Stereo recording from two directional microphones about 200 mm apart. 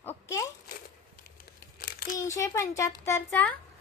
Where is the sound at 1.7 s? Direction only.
50° left (ahead or behind).